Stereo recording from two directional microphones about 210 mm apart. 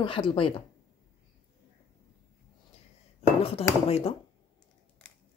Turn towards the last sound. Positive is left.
turn(degrees=25)  # may be behind; listen again after turning